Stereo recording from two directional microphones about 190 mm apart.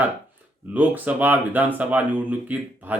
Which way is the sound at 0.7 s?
10° right (ahead or behind).